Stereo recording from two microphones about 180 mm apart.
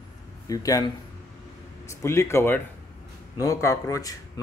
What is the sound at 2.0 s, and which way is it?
Speech, 15° left (ahead or behind).